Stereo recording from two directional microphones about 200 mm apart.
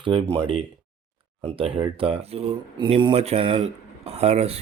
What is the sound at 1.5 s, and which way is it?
Speech, 25° right (ahead or behind).